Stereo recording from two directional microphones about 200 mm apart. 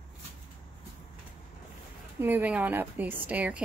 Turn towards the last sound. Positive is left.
turn(degrees=-5)  # may be behind; listen again after turning